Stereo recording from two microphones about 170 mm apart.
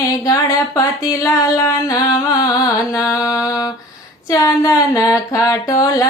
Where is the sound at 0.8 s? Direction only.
20° left (ahead or behind).